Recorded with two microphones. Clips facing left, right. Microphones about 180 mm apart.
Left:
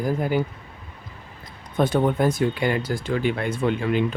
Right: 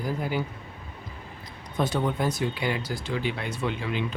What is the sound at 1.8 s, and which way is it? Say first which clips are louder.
Speech: left 6 dB; 55° left (ahead or behind).